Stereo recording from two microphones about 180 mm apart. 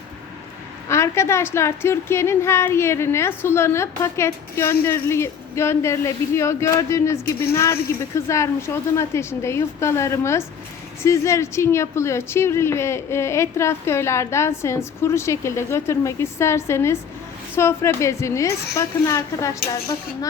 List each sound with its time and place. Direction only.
0.9 s a woman's voice: 15° left (ahead or behind)